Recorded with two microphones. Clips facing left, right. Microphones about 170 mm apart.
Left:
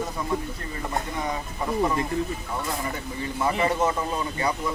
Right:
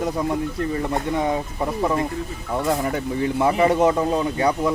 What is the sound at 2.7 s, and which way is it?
Speech, 65° right (ahead or behind).